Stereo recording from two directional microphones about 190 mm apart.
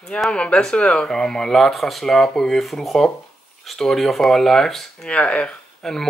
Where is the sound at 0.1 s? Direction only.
5° left (ahead or behind).